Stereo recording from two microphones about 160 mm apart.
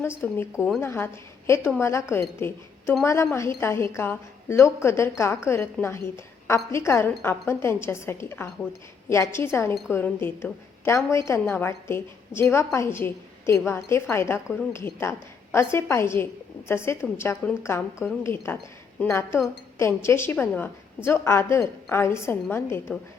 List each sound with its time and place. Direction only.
0.2 s a woman's voice: 15° left (ahead or behind)